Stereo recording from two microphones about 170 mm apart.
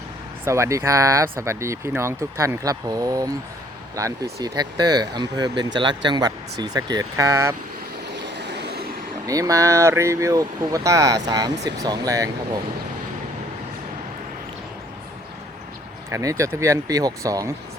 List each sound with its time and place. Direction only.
0.4 s speech: 15° right (ahead or behind)
8.1 s vehicle: 90° right; by 8.9 s 75° right (ahead or behind)
9.2 s speech: 20° right (ahead or behind)
16.0 s speech: 15° right (ahead or behind)